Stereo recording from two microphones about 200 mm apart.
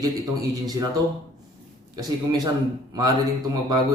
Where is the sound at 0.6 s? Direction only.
20° right (ahead or behind).